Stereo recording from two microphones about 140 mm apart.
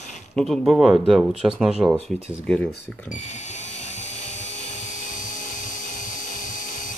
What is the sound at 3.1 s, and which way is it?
Dental drill, 60° left (ahead or behind).